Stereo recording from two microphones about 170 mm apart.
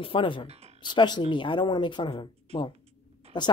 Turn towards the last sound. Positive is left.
turn(degrees=25)  # may be behind; listen again after turning